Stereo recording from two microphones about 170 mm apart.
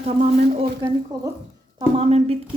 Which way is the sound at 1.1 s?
20° right (ahead or behind).